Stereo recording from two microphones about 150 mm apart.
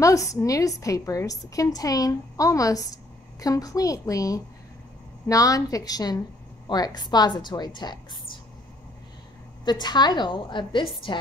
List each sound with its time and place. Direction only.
0.0 s a woman's voice: 20° left (ahead or behind)
9.7 s a woman's voice: 30° left (ahead or behind)